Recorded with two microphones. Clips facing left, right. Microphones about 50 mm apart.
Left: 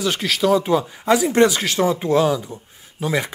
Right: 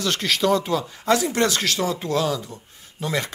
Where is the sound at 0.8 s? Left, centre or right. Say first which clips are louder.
Left 3 dB; centre.